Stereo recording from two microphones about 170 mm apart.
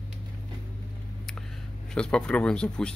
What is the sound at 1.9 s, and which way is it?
Speech, 5° left (ahead or behind).